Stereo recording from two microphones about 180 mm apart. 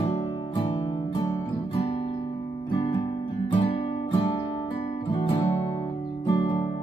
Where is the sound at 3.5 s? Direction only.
30° left (ahead or behind).